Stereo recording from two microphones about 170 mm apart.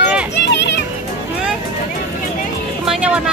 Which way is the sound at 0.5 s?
90° left.